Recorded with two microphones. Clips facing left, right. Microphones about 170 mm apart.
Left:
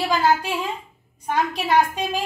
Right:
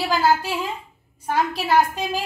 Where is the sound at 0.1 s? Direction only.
5° right (ahead or behind).